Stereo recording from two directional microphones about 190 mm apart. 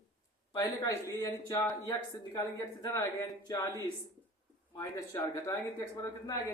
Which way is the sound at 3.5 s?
20° left (ahead or behind).